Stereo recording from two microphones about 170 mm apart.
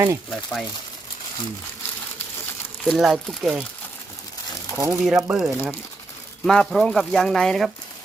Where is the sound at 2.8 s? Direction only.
Centre (ahead or behind).